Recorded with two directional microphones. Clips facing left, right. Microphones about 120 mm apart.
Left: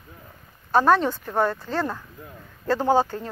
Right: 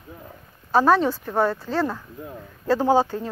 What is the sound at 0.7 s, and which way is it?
A woman's voice, 5° right (ahead or behind).